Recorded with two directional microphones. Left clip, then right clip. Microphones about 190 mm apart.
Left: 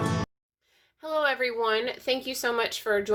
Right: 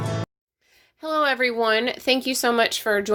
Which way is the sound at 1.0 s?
30° right (ahead or behind).